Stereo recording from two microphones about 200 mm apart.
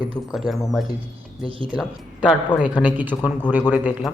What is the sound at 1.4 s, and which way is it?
Speech, 25° right (ahead or behind).